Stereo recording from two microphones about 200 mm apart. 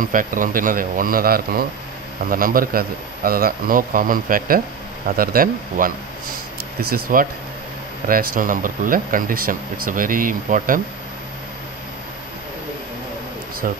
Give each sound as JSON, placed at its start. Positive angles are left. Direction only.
{"t": 0.0, "sound": "speech", "side_deg": -45}